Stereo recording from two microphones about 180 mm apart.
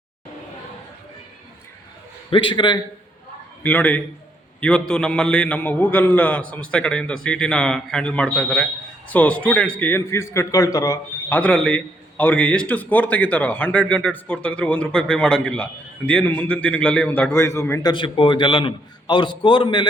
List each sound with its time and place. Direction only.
2.3 s a man's voice: 30° left (ahead or behind)
3.6 s a man's voice: 10° left (ahead or behind)
17.9 s a man's voice: 30° left (ahead or behind)